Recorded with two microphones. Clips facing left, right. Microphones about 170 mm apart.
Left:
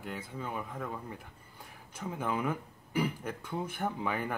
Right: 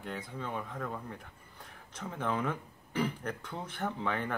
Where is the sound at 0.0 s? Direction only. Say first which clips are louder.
Even; 5° left (ahead or behind).